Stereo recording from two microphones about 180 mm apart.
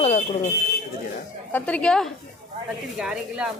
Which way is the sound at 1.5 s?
10° left (ahead or behind).